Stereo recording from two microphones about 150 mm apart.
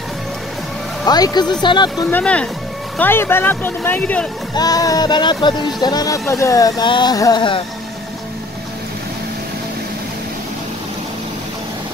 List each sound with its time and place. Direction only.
1.0 s speech: 25° left (ahead or behind)
2.0 s speech: 10° left (ahead or behind)
4.6 s speech: 25° left (ahead or behind)